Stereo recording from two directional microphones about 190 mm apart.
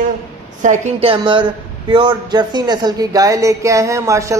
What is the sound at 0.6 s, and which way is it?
A woman's voice, 40° right (ahead or behind).